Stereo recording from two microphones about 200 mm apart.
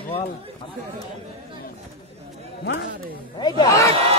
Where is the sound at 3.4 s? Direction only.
20° left (ahead or behind).